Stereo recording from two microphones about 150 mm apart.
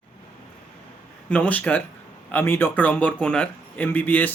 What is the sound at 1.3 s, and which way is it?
A man's voice, 10° left (ahead or behind).